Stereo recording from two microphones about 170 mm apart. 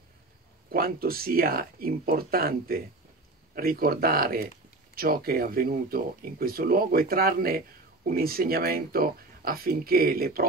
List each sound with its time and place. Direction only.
0.7 s speech: 60° right (ahead or behind)